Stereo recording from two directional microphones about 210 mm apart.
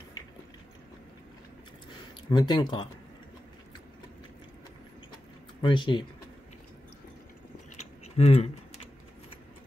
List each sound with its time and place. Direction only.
2.3 s speech: 20° left (ahead or behind)
5.6 s speech: 20° left (ahead or behind)
8.2 s speech: 30° left (ahead or behind)